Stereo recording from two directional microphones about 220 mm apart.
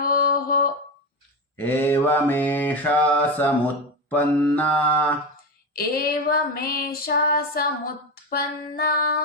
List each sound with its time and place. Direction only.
0.0 s a sound: 45° left (ahead or behind)
1.5 s mantra: 10° left (ahead or behind)
5.7 s female singing: 40° left (ahead or behind)